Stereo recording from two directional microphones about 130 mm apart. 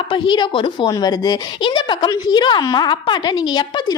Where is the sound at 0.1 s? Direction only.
40° left (ahead or behind).